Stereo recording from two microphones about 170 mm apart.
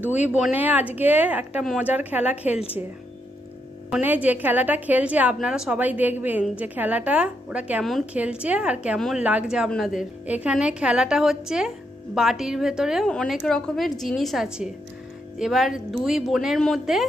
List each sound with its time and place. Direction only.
0.6 s a woman's voice: 10° right (ahead or behind)
2.5 s speech: 35° left (ahead or behind)
3.9 s a woman's voice: 10° right (ahead or behind)